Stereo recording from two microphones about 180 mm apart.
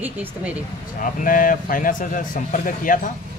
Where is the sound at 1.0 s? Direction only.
50° left (ahead or behind).